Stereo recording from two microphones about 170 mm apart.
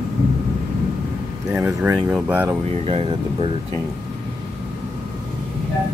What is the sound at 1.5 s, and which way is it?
Speech, 10° right (ahead or behind).